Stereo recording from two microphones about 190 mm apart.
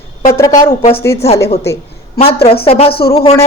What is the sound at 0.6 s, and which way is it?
A woman's voice, 30° left (ahead or behind).